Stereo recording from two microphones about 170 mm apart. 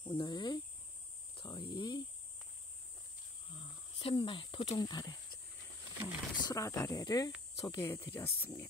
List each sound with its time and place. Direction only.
0.0 s speech: 25° left (ahead or behind)
1.3 s cricket: 30° left (ahead or behind)
3.4 s snake: 30° left (ahead or behind)
6.3 s speech: 20° left (ahead or behind)
7.8 s speech: 15° left (ahead or behind)